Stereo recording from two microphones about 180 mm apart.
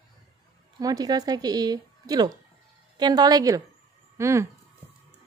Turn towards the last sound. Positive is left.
turn(degrees=-15)  # may be behind; listen again after turning